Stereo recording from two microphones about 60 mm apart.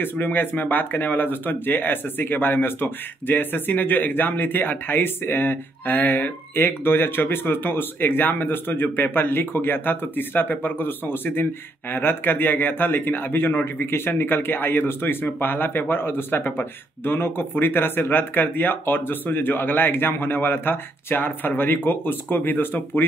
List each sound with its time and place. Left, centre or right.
0.0 s speech: left